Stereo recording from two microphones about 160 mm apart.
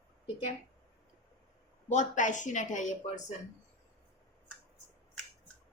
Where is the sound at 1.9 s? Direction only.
50° left (ahead or behind).